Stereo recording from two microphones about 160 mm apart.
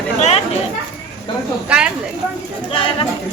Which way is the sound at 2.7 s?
35° left (ahead or behind).